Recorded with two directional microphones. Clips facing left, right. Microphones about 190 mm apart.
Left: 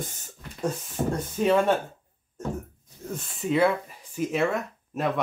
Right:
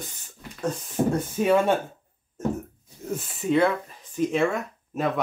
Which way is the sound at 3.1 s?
5° right (ahead or behind).